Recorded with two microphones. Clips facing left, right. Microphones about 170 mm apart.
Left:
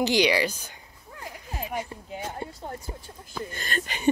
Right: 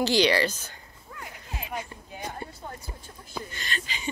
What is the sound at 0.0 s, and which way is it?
Speech, 15° left (ahead or behind).